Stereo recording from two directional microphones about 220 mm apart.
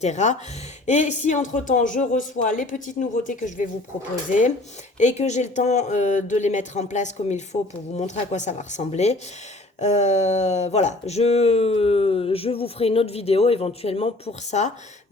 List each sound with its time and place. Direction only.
0.0 s speech: 30° left (ahead or behind)
4.9 s speech: 30° left (ahead or behind)